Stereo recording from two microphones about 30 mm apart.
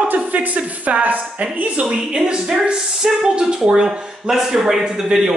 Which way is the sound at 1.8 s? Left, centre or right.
Right.